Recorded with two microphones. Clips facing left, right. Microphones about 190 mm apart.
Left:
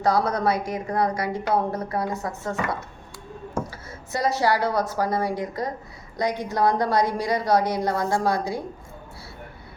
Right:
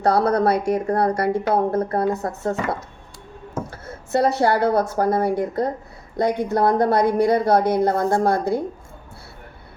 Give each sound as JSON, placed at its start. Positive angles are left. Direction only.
{"t": 0.0, "sound": "a woman's voice", "side_deg": -60}
{"t": 3.7, "sound": "a woman's voice", "side_deg": -60}